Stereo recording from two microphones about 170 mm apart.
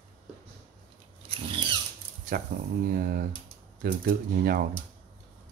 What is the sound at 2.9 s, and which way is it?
Speech, 60° right (ahead or behind).